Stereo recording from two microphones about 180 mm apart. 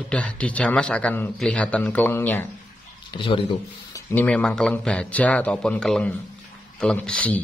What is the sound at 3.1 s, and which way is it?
Speech, 30° left (ahead or behind).